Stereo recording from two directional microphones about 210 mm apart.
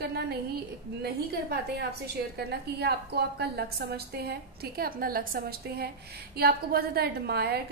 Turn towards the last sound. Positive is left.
turn(degrees=-50)  # may be behind; listen again after turning